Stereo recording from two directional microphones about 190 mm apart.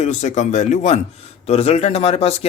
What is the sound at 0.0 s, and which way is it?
Speech, 35° left (ahead or behind).